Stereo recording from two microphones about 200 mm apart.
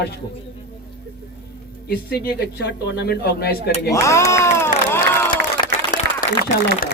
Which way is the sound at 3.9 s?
15° left (ahead or behind).